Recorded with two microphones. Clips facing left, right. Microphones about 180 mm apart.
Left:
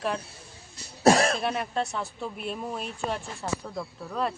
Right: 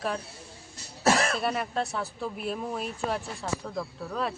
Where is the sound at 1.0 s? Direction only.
35° left (ahead or behind).